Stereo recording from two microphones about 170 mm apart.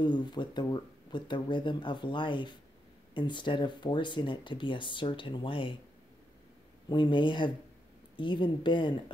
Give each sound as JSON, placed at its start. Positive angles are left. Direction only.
{"t": 0.0, "sound": "speech", "side_deg": 25}
{"t": 6.9, "sound": "speech", "side_deg": 25}